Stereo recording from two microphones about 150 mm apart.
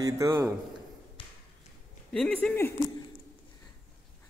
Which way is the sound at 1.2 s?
35° left (ahead or behind).